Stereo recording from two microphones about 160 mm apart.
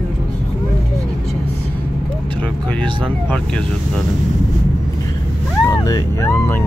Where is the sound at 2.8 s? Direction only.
10° left (ahead or behind).